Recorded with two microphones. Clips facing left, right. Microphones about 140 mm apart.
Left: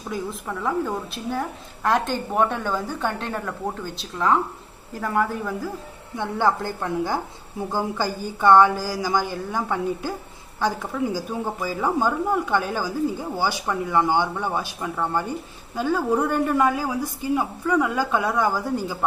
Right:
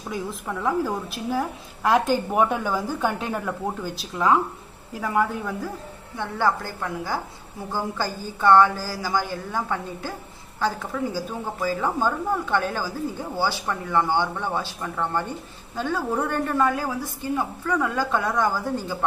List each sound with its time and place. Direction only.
0.1 s a woman's voice: centre (ahead or behind)
6.1 s a woman's voice: 15° left (ahead or behind)